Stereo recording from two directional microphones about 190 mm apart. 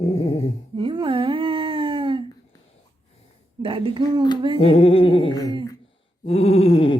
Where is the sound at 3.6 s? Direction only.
30° right (ahead or behind).